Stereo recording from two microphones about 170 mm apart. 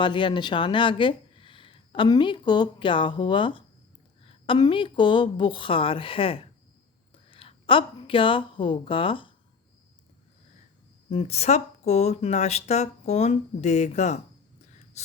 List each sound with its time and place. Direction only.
0.0 s speech: 30° left (ahead or behind)
11.1 s speech: 40° left (ahead or behind)
15.0 s gasp: 40° left (ahead or behind)